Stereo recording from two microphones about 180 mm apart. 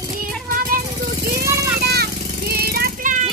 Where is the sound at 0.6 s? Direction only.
55° right (ahead or behind).